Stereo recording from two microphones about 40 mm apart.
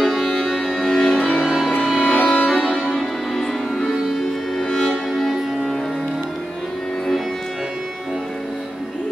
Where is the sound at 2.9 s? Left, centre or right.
Centre.